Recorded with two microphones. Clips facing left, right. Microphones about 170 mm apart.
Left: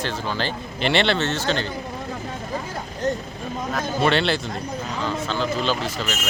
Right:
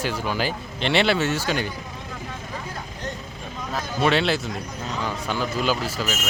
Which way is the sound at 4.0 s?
Centre (ahead or behind).